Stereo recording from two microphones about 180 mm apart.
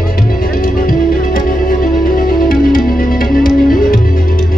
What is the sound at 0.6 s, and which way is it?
Music, 55° left (ahead or behind).